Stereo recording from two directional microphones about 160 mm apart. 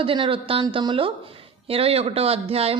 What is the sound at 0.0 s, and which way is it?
A woman's voice, 35° right (ahead or behind).